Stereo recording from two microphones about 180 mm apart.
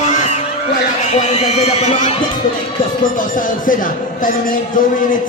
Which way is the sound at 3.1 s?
50° left (ahead or behind).